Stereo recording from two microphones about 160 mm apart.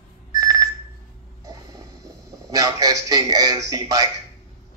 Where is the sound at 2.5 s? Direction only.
20° right (ahead or behind).